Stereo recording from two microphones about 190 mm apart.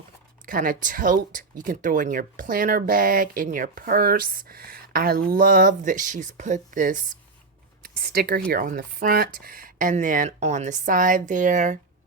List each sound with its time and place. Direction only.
0.4 s speech: 45° right (ahead or behind)
7.8 s a sound: 50° right (ahead or behind)
8.5 s speech: 50° right (ahead or behind)